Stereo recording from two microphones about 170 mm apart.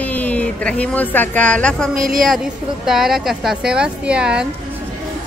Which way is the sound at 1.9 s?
55° right (ahead or behind).